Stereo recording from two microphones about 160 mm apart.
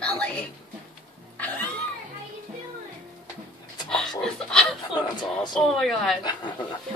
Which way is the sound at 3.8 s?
5° left (ahead or behind).